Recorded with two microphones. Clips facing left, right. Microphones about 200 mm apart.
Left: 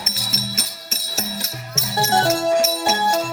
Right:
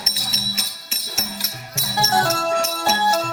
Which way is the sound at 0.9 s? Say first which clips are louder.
Left 3 dB; 35° left (ahead or behind).